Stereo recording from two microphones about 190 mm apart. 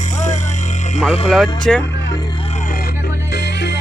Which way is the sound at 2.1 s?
20° left (ahead or behind).